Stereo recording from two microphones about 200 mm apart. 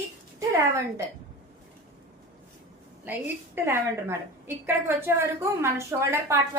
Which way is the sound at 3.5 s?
10° right (ahead or behind).